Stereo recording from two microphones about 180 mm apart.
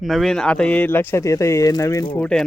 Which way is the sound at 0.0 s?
Centre (ahead or behind).